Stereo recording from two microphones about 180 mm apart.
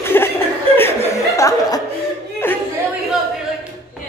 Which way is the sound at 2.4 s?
10° left (ahead or behind).